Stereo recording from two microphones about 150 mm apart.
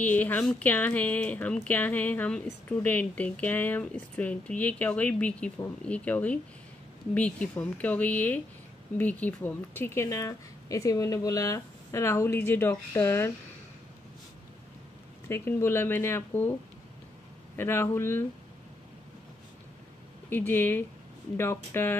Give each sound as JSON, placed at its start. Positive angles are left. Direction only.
{"t": 0.0, "sound": "speech", "side_deg": 10}
{"t": 15.2, "sound": "speech", "side_deg": 15}
{"t": 17.6, "sound": "speech", "side_deg": 15}
{"t": 20.2, "sound": "speech", "side_deg": 15}